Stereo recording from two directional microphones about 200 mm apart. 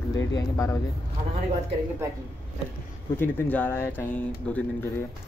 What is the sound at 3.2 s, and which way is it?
Speech, 10° left (ahead or behind).